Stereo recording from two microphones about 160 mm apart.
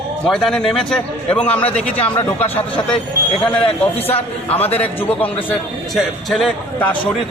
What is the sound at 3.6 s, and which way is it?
Speech, 40° left (ahead or behind).